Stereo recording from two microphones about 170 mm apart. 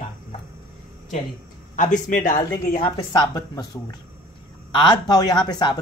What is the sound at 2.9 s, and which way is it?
Speech, 25° left (ahead or behind).